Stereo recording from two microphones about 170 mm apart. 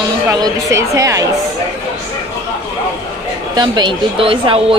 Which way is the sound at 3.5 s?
25° right (ahead or behind).